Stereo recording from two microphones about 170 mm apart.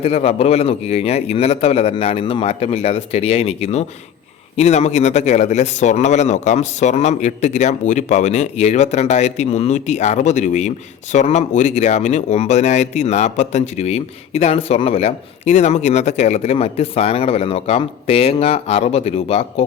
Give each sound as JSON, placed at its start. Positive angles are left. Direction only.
{"t": 0.0, "sound": "speech", "side_deg": 40}